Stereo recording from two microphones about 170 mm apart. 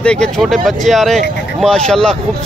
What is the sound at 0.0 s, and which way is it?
Speech, 5° left (ahead or behind).